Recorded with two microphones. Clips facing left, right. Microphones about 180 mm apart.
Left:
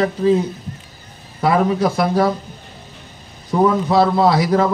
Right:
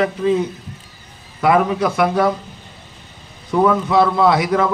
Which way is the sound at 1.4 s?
35° left (ahead or behind).